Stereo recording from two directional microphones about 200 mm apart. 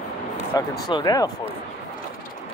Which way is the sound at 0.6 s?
20° left (ahead or behind).